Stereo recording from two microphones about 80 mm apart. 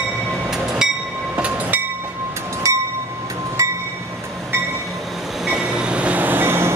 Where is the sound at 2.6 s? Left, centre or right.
Right.